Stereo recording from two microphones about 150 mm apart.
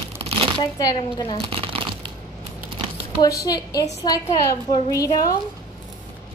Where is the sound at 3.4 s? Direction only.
25° left (ahead or behind).